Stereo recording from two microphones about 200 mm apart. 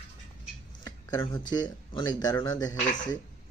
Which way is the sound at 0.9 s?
20° left (ahead or behind).